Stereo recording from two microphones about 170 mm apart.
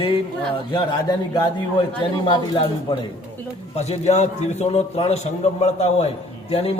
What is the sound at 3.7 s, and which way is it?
A man's voice, 40° left (ahead or behind).